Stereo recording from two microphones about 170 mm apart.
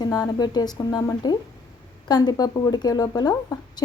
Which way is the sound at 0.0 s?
25° left (ahead or behind).